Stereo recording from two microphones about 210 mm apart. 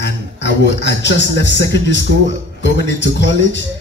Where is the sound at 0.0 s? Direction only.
55° left (ahead or behind).